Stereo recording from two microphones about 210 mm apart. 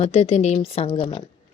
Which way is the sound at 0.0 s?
30° left (ahead or behind).